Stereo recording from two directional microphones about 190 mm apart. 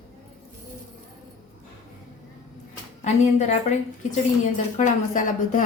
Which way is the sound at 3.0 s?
35° left (ahead or behind).